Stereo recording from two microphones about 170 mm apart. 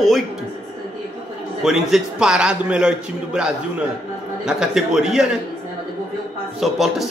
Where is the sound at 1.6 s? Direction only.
5° right (ahead or behind).